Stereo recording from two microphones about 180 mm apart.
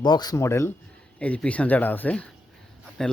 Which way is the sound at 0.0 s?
25° left (ahead or behind).